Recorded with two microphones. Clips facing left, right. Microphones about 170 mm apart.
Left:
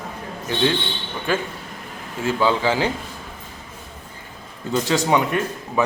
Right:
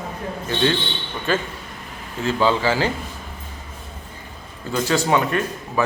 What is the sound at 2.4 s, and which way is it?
Speech, 15° left (ahead or behind).